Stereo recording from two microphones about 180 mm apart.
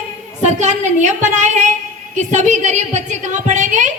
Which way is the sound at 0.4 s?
40° right (ahead or behind).